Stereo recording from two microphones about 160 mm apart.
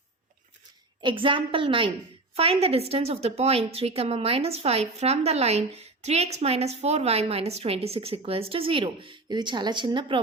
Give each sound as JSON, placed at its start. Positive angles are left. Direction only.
{"t": 1.0, "sound": "a woman's voice", "side_deg": -30}